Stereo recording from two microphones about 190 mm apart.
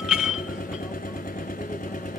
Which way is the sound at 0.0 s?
5° right (ahead or behind).